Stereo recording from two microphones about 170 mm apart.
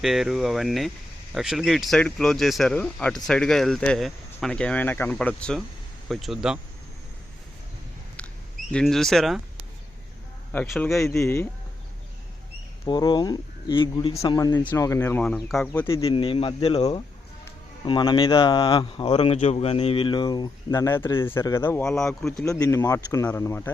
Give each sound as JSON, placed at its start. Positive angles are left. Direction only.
{"t": 0.0, "sound": "speech", "side_deg": 0}
{"t": 8.7, "sound": "speech", "side_deg": 0}
{"t": 10.5, "sound": "speech", "side_deg": 5}
{"t": 11.1, "sound": "speech", "side_deg": 15}
{"t": 12.8, "sound": "a man's voice", "side_deg": 25}
{"t": 16.0, "sound": "a man's voice", "side_deg": 30}
{"t": 22.4, "sound": "speech", "side_deg": 20}